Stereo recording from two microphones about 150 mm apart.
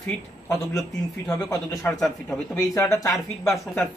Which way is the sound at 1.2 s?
5° left (ahead or behind).